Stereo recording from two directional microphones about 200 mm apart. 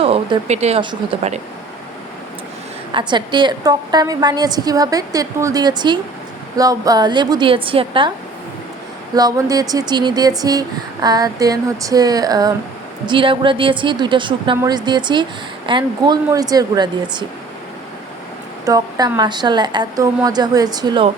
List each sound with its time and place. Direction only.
0.0 s speech: 30° right (ahead or behind)
2.9 s a woman's voice: 20° right (ahead or behind)
9.1 s a woman's voice: 20° right (ahead or behind)
18.6 s a woman's voice: 20° right (ahead or behind)